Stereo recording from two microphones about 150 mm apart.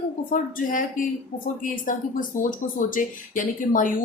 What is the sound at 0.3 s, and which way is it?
Speech, 65° left (ahead or behind).